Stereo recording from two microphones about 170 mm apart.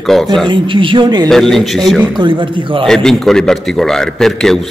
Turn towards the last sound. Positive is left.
turn(degrees=0)  # may be behind; listen again after turning